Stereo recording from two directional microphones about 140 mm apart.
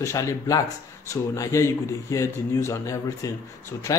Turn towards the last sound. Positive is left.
turn(degrees=20)  # may be behind; listen again after turning